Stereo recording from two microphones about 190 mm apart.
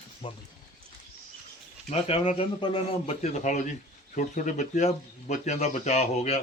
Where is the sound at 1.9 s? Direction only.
35° left (ahead or behind).